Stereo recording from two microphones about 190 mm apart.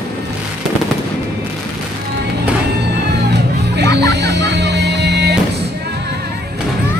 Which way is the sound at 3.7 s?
60° right (ahead or behind).